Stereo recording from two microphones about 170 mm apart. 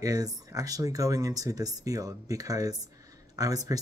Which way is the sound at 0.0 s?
20° right (ahead or behind).